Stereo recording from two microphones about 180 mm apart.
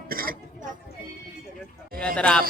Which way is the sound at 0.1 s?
55° right (ahead or behind).